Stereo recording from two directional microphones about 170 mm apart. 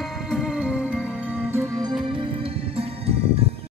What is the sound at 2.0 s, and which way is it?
Music, 30° right (ahead or behind).